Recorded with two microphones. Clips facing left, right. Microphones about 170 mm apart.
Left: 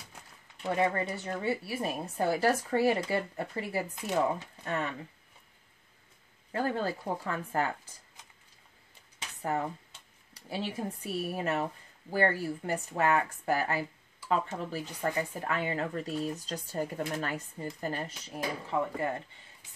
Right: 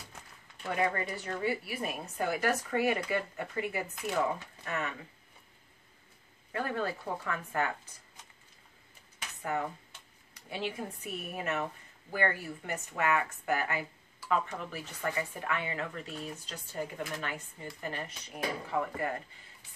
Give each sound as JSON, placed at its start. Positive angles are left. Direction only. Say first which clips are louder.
{"t": 0.7, "sound": "speech", "louder": "left 2 dB", "side_deg": 30}
{"t": 6.5, "sound": "speech", "louder": "left 3 dB", "side_deg": 30}
{"t": 9.4, "sound": "speech", "louder": "left 2 dB", "side_deg": 30}